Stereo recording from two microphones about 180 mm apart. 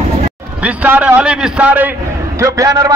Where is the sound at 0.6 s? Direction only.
10° right (ahead or behind).